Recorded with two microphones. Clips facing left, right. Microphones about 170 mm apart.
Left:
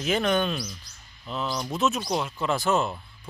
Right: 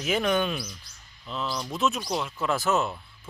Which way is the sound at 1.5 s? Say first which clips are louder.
Left 1 dB; 5° left (ahead or behind).